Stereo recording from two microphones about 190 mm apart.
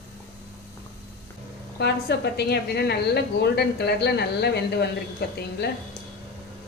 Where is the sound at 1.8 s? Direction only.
60° left (ahead or behind).